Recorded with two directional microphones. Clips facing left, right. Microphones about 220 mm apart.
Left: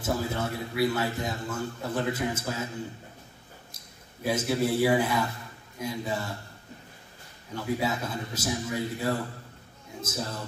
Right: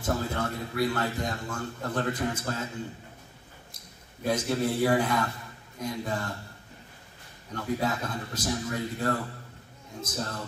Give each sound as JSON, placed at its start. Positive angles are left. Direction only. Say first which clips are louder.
{"t": 0.0, "sound": "a man's voice", "louder": "even", "side_deg": 5}
{"t": 4.2, "sound": "a man's voice", "louder": "left 1 dB", "side_deg": 5}
{"t": 7.5, "sound": "a man's voice", "louder": "even", "side_deg": 5}